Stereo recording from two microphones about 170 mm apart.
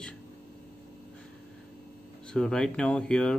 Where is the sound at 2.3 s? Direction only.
5° left (ahead or behind).